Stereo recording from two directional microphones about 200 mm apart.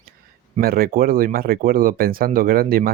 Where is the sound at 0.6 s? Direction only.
50° right (ahead or behind).